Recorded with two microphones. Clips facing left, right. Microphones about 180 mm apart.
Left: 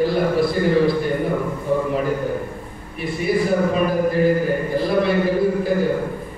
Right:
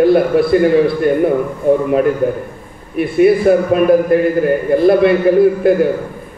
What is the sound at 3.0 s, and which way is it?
A man's voice, 65° right (ahead or behind).